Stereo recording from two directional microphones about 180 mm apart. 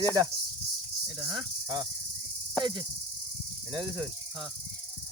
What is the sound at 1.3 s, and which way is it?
Speech, 20° right (ahead or behind).